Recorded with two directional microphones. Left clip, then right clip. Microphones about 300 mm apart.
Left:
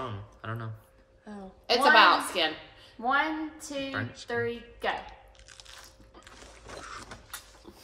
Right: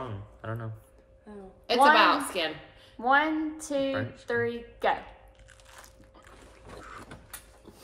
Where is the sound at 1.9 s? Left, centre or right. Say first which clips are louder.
Left 2 dB; centre.